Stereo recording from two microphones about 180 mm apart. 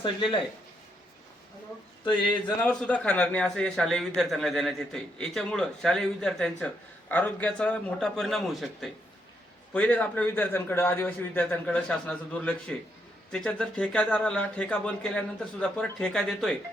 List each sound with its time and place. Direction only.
0.0 s speech: 25° left (ahead or behind)
2.6 s a man's voice: 5° left (ahead or behind)